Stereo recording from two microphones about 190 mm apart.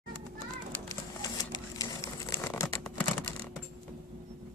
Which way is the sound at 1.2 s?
20° left (ahead or behind).